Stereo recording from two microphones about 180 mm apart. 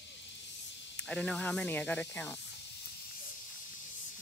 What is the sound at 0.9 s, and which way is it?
Speech, 5° left (ahead or behind).